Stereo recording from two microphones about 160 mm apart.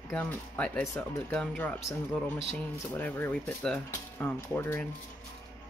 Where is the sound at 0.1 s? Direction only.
10° left (ahead or behind).